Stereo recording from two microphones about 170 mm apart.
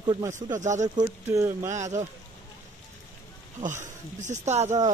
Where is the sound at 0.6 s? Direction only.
45° right (ahead or behind).